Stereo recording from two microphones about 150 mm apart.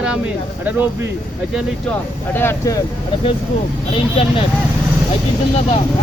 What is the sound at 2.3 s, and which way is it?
Speech, 20° left (ahead or behind).